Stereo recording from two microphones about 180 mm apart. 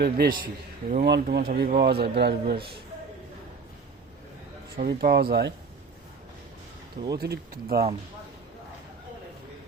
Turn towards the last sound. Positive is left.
turn(degrees=-60)  # may be behind; listen again after turning